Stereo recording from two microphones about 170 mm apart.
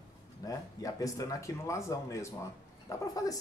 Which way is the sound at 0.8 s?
20° left (ahead or behind).